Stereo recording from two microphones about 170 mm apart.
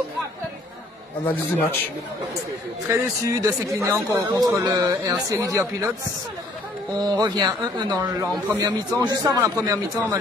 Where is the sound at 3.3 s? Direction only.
20° right (ahead or behind).